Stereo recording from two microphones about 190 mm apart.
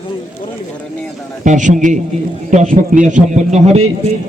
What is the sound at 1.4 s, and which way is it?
A man's voice, 40° right (ahead or behind).